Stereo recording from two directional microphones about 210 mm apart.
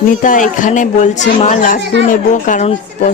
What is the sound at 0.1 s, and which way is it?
Speech, 40° left (ahead or behind).